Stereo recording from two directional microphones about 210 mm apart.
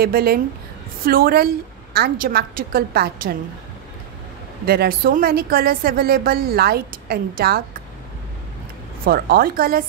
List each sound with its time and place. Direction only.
0.0 s a woman's voice: 45° right (ahead or behind)
4.6 s a woman's voice: 45° right (ahead or behind)
9.0 s a woman's voice: 45° right (ahead or behind)